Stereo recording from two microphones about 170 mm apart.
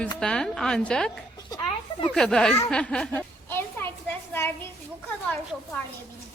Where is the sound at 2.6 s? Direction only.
5° left (ahead or behind).